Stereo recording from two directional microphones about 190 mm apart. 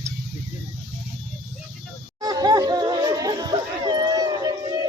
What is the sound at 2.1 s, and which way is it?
Chatter, 20° right (ahead or behind).